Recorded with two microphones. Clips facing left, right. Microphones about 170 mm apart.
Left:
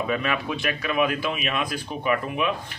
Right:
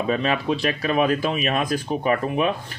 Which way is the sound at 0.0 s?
35° right (ahead or behind).